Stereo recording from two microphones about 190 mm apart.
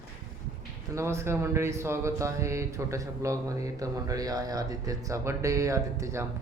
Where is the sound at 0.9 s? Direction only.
15° right (ahead or behind).